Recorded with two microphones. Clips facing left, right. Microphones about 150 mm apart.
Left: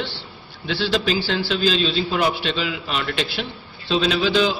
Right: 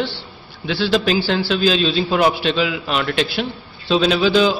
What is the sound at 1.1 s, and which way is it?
A man's voice, 50° right (ahead or behind).